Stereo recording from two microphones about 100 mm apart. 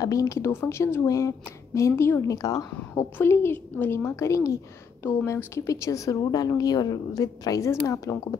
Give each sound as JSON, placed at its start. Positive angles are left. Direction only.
{"t": 0.0, "sound": "a woman's voice", "side_deg": 35}
{"t": 2.2, "sound": "a woman's voice", "side_deg": 35}
{"t": 2.9, "sound": "a woman's voice", "side_deg": 20}